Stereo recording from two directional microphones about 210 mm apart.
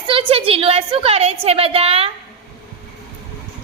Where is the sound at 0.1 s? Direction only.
25° right (ahead or behind).